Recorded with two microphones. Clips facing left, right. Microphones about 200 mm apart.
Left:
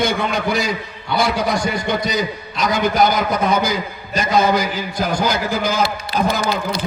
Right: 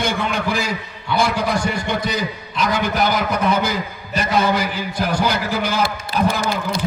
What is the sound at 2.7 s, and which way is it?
A man's voice, 65° right (ahead or behind).